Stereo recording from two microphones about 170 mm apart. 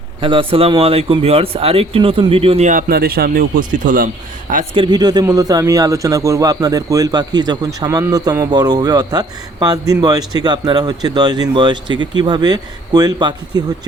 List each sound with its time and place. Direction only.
0.2 s speech: 30° right (ahead or behind)
2.6 s a man's voice: 60° right (ahead or behind)
4.7 s speech: 25° right (ahead or behind)